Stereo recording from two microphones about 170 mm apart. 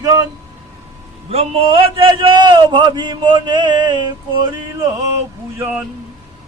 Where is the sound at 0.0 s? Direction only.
20° right (ahead or behind).